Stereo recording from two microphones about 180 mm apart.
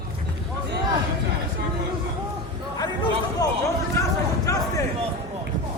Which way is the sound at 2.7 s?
20° left (ahead or behind).